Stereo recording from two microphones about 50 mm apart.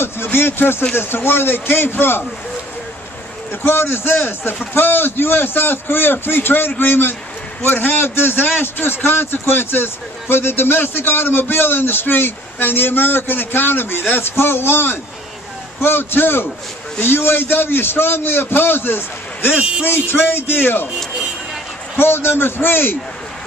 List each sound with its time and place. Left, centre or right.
0.0 s a man's voice: left
3.6 s a man's voice: left
19.5 s a man's voice: right
19.9 s a man's voice: left
21.9 s a man's voice: left